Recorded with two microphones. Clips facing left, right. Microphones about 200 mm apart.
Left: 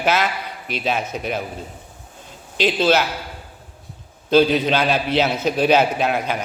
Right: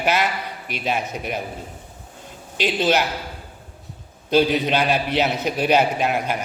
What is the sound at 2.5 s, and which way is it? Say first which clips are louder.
Speech: left 2 dB; 15° right (ahead or behind).